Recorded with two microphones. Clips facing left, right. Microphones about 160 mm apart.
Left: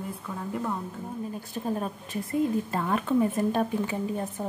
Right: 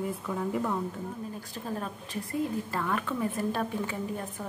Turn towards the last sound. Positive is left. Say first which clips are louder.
# left 4 dB
turn(degrees=20)  # may be behind; listen again after turning